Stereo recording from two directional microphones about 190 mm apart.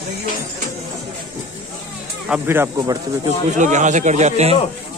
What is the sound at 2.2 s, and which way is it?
Speech, 10° right (ahead or behind).